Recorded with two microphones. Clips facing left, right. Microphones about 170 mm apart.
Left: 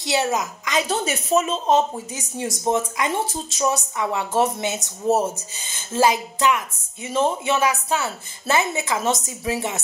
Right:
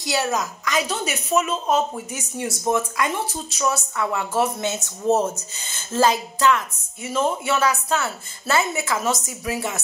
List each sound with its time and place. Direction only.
0.0 s a woman's voice: 25° left (ahead or behind)